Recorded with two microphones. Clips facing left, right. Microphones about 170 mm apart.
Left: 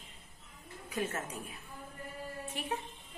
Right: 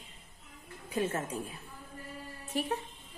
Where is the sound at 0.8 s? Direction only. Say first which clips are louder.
Right 4 dB; 30° right (ahead or behind).